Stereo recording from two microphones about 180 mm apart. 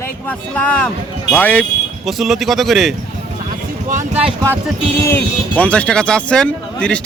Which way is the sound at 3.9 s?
45° right (ahead or behind).